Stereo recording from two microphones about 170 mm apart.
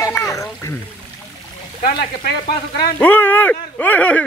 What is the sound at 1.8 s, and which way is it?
Speech, 65° left (ahead or behind).